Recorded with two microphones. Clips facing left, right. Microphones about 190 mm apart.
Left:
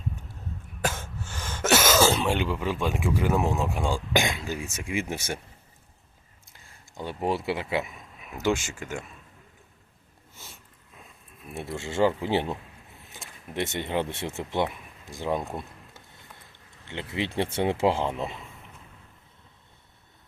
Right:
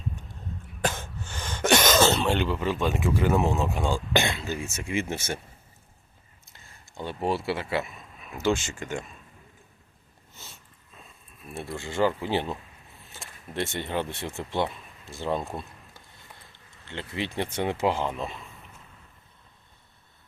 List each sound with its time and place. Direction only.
0.8 s speech: 5° left (ahead or behind)
6.5 s speech: 10° left (ahead or behind)
11.5 s speech: 25° left (ahead or behind)
13.2 s a sound: 20° left (ahead or behind)
13.5 s speech: 20° left (ahead or behind)
16.8 s speech: 20° left (ahead or behind)